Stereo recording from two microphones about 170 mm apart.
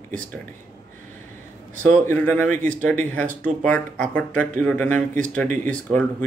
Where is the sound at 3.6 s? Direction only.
10° left (ahead or behind).